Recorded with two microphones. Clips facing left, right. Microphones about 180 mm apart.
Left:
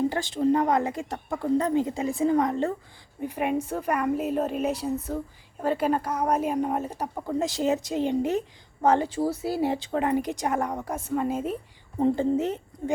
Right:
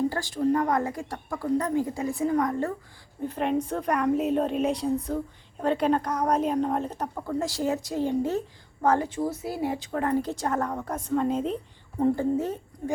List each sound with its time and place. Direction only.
0.1 s speech: 25° left (ahead or behind)
3.2 s a woman's voice: 10° left (ahead or behind)
9.0 s speech: 35° left (ahead or behind)
10.0 s a woman's voice: 15° left (ahead or behind)
11.9 s speech: 20° left (ahead or behind)